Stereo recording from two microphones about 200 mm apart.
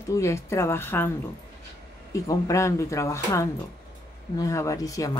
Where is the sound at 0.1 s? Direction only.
15° left (ahead or behind).